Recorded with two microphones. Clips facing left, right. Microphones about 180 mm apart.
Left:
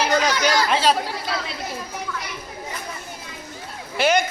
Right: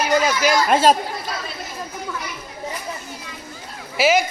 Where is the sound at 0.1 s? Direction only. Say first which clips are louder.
Right 2 dB; 5° right (ahead or behind).